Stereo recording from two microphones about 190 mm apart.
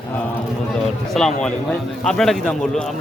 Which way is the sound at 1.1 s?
5° left (ahead or behind).